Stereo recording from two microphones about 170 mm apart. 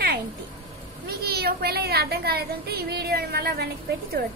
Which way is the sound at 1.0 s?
65° right (ahead or behind).